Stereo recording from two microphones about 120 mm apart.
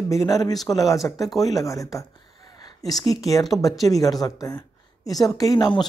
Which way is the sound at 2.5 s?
35° left (ahead or behind).